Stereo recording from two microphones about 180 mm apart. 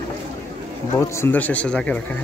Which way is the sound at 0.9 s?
15° left (ahead or behind).